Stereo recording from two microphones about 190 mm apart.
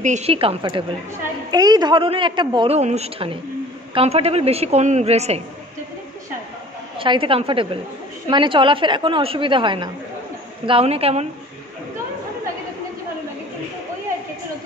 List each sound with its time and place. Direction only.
0.0 s a man's voice: 35° right (ahead or behind)
7.0 s a man's voice: 30° right (ahead or behind)